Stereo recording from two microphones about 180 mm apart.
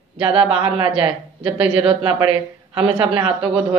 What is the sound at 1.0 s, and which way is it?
Speech, 30° right (ahead or behind).